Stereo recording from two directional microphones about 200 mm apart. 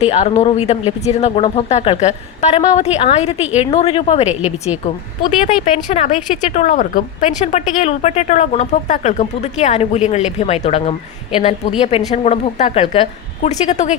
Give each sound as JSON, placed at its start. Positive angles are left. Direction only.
{"t": 0.0, "sound": "speech", "side_deg": 35}
{"t": 4.3, "sound": "a woman's voice", "side_deg": -5}
{"t": 5.7, "sound": "speech", "side_deg": 30}